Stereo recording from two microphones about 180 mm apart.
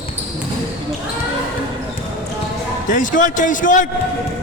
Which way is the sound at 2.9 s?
45° left (ahead or behind).